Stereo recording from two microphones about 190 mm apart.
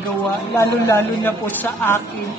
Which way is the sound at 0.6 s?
15° left (ahead or behind).